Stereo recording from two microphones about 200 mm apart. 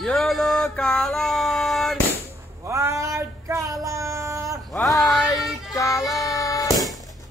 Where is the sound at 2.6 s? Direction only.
15° right (ahead or behind).